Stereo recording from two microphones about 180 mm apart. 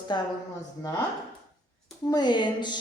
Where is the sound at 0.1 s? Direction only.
25° left (ahead or behind).